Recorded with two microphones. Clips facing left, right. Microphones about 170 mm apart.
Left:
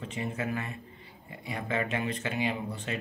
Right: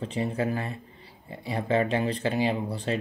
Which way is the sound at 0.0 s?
35° right (ahead or behind).